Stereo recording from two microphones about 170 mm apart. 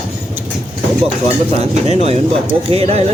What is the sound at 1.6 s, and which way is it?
Speech, 40° right (ahead or behind).